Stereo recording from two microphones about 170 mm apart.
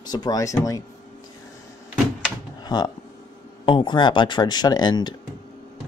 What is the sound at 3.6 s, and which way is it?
Speech, 30° left (ahead or behind).